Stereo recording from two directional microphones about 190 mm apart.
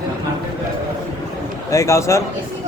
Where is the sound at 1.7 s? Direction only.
15° left (ahead or behind).